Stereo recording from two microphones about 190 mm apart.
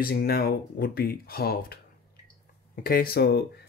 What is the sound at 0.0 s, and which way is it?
Speech, 55° left (ahead or behind).